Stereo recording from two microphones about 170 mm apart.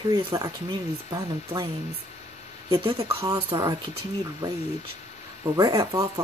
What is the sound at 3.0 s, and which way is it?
Speech, 20° right (ahead or behind).